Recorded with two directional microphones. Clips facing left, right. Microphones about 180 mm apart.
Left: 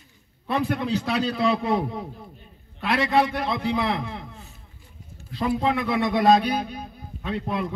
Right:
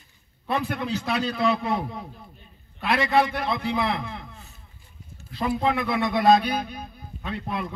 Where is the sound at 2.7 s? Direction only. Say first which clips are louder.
Even; 5° right (ahead or behind).